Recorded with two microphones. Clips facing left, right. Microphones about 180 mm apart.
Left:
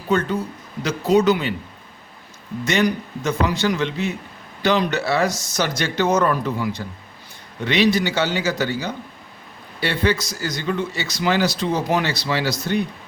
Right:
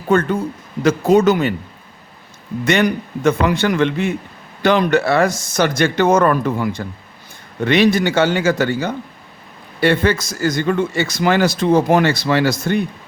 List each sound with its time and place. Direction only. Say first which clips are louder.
0.1 s a man's voice: right 5 dB; 50° right (ahead or behind)
2.6 s a man's voice: right 4 dB; 60° right (ahead or behind)